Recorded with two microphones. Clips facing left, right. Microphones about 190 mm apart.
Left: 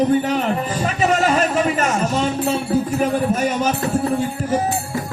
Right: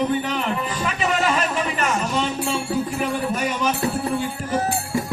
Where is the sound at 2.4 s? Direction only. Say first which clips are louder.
Left 4 dB; 40° left (ahead or behind).